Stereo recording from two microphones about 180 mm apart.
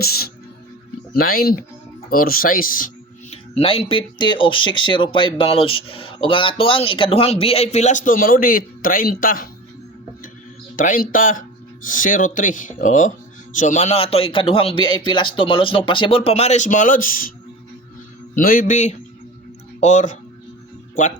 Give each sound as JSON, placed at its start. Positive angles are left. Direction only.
{"t": 0.0, "sound": "music", "side_deg": 60}
{"t": 1.1, "sound": "speech", "side_deg": 55}
{"t": 3.5, "sound": "speech", "side_deg": 30}
{"t": 10.8, "sound": "speech", "side_deg": 50}
{"t": 18.3, "sound": "speech", "side_deg": 50}